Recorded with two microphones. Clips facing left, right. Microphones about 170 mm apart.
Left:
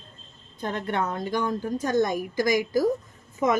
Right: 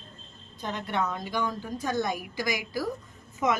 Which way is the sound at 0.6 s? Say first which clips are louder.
Left 3 dB; 55° left (ahead or behind).